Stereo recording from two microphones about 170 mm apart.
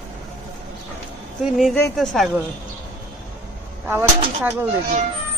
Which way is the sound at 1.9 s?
Centre (ahead or behind).